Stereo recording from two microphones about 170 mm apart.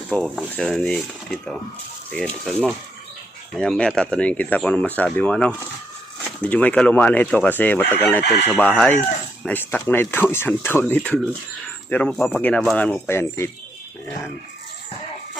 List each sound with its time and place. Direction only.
0.1 s speech: 5° left (ahead or behind)
8.2 s speech: 75° left (ahead or behind)
8.4 s speech: 10° left (ahead or behind)